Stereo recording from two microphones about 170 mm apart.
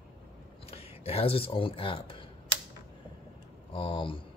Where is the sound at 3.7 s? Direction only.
30° left (ahead or behind).